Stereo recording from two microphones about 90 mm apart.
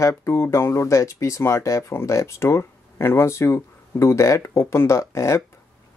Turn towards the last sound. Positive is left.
turn(degrees=35)  # may be behind; listen again after turning